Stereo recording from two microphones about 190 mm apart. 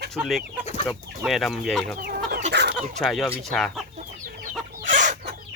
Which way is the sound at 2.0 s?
50° right (ahead or behind).